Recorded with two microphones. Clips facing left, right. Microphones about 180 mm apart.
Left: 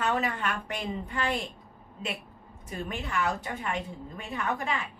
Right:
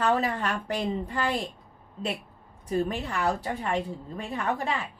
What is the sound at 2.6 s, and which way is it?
A woman's voice, 35° right (ahead or behind).